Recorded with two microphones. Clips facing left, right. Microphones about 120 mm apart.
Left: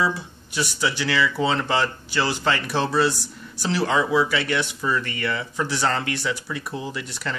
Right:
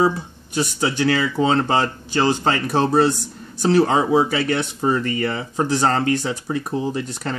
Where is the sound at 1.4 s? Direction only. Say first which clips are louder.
Right 4 dB; 40° right (ahead or behind).